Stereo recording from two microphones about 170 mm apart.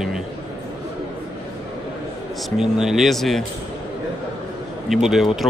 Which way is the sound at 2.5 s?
Centre (ahead or behind).